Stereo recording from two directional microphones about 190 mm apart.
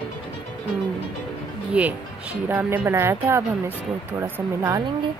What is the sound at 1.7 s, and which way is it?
Speech, 5° right (ahead or behind).